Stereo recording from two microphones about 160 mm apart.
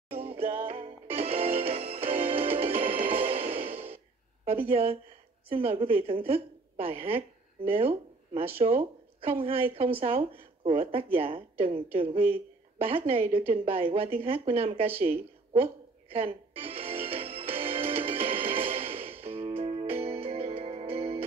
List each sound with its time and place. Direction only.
0.1 s music: 40° right (ahead or behind)
4.5 s a woman's voice: 35° right (ahead or behind)
13.5 s a sound: 35° right (ahead or behind)